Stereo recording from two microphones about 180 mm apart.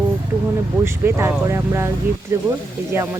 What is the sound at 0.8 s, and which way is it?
Speech, 15° right (ahead or behind).